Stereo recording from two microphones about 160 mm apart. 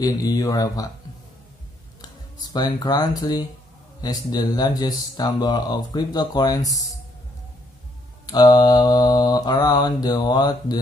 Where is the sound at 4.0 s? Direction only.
25° left (ahead or behind).